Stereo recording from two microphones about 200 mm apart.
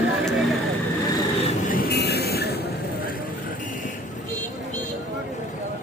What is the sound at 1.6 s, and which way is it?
Vehicle, 45° left (ahead or behind).